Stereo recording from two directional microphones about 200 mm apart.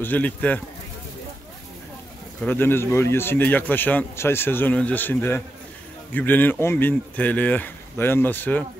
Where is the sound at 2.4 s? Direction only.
10° left (ahead or behind).